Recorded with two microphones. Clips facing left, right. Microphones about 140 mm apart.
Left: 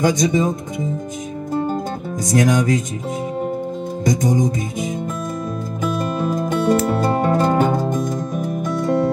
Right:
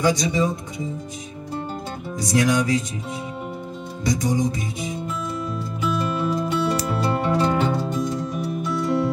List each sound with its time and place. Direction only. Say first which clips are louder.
0.0 s speech: left 4 dB; 45° left (ahead or behind)
1.5 s music: left 8 dB; 45° left (ahead or behind)
4.0 s music: left 3 dB; 45° left (ahead or behind)